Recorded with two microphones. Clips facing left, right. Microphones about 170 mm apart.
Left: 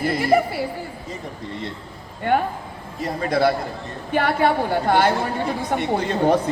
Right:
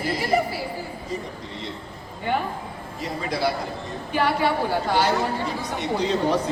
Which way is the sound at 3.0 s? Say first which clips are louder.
Left 6 dB; 55° left (ahead or behind).